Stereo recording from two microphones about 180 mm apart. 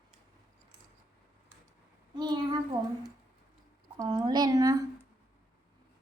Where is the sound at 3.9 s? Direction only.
20° right (ahead or behind).